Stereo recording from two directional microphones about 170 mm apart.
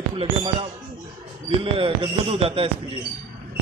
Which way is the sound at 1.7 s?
35° right (ahead or behind).